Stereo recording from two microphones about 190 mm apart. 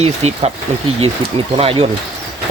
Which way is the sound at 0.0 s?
35° right (ahead or behind).